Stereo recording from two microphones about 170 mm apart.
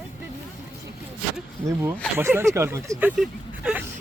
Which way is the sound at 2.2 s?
15° right (ahead or behind).